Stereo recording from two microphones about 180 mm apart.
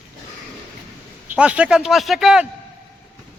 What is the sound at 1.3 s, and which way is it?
Speech, 5° right (ahead or behind).